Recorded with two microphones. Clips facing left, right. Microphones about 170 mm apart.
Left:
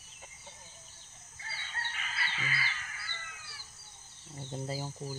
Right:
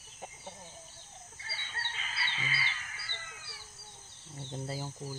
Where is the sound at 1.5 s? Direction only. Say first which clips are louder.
Left 1 dB; 25° right (ahead or behind).